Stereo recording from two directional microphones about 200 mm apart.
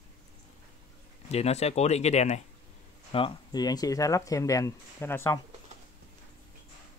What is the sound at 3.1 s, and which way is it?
Speech, 25° left (ahead or behind).